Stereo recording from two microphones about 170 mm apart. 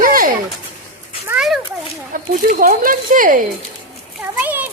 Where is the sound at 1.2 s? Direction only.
5° right (ahead or behind).